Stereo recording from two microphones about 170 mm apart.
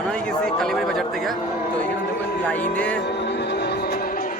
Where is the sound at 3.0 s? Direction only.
80° left; by 4.4 s 55° left (ahead or behind).